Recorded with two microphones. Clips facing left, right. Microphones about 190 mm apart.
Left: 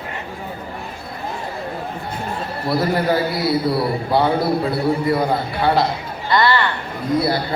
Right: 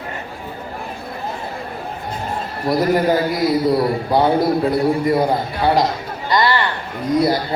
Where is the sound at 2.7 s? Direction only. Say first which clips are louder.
Right 3 dB; 15° right (ahead or behind).